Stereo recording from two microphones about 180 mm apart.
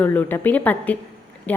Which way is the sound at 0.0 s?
10° left (ahead or behind).